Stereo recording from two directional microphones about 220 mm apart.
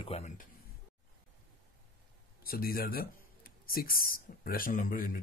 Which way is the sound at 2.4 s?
40° left (ahead or behind).